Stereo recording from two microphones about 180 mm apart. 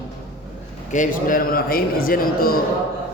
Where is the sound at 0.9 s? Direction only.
45° left (ahead or behind).